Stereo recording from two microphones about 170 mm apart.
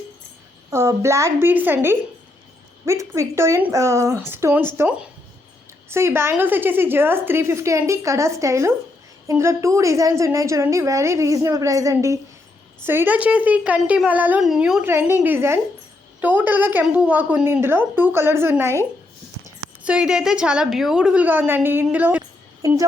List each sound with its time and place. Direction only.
0.7 s a woman's voice: 15° right (ahead or behind)
19.8 s a woman's voice: 5° right (ahead or behind)